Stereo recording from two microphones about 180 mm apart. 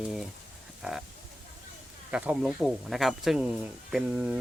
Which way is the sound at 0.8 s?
Centre (ahead or behind).